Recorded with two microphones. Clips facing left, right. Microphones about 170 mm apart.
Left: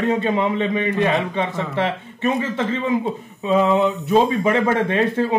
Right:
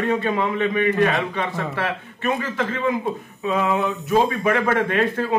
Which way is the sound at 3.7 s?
20° left (ahead or behind).